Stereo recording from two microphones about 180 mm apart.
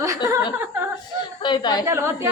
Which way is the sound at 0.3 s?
15° right (ahead or behind).